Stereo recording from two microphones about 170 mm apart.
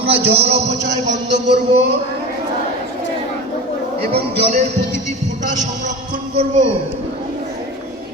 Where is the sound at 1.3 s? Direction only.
90° right.